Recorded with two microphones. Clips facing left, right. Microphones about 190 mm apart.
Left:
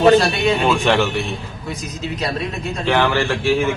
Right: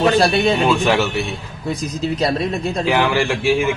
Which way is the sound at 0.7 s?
5° right (ahead or behind).